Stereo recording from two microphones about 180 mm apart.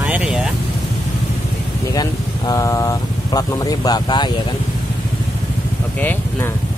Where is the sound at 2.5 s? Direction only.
15° left (ahead or behind).